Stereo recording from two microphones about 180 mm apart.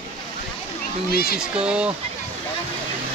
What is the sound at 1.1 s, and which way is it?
Speech, 55° left (ahead or behind).